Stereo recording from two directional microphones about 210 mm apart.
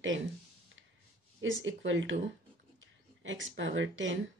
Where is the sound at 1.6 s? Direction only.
60° right (ahead or behind).